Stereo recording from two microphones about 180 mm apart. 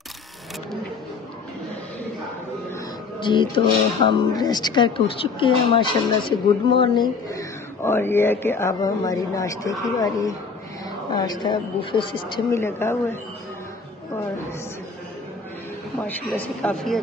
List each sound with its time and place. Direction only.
3.2 s speech: 25° left (ahead or behind)
7.2 s speech: 15° left (ahead or behind)
12.4 s speech: 15° left (ahead or behind)
16.3 s a man's voice: 5° left (ahead or behind)